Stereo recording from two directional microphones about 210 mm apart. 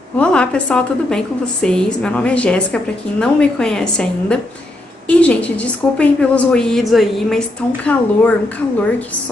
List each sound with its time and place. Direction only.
0.2 s a woman's voice: 5° left (ahead or behind)